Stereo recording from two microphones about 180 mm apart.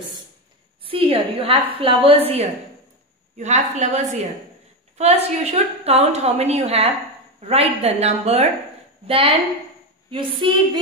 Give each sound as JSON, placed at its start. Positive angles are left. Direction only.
{"t": 0.8, "sound": "a woman's voice", "side_deg": -30}
{"t": 10.4, "sound": "a woman's voice", "side_deg": -30}